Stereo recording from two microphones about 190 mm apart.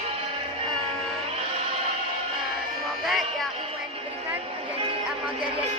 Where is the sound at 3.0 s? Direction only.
Centre (ahead or behind).